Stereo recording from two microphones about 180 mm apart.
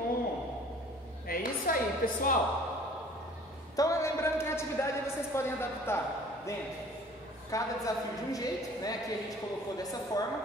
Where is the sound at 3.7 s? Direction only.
20° left (ahead or behind).